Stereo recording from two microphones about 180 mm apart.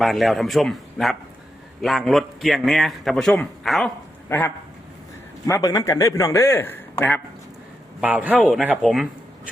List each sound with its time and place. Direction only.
0.0 s a man's voice: centre (ahead or behind)
4.3 s a man's voice: 15° left (ahead or behind)
8.0 s a man's voice: 10° right (ahead or behind)